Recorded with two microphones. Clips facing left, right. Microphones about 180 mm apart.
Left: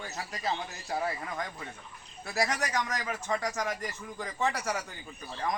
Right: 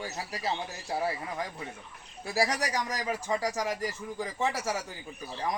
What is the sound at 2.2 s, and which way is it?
Speech, 30° right (ahead or behind).